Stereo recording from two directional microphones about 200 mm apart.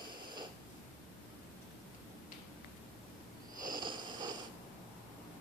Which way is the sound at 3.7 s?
20° right (ahead or behind).